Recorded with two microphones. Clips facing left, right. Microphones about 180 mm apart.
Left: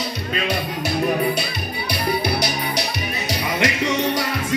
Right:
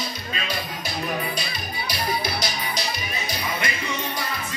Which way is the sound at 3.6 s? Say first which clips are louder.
Left 9 dB; 90° left.